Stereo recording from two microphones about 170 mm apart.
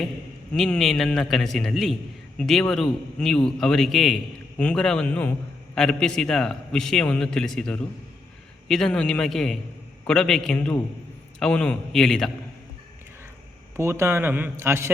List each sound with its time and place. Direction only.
0.5 s a man's voice: centre (ahead or behind)
13.7 s a man's voice: 15° right (ahead or behind)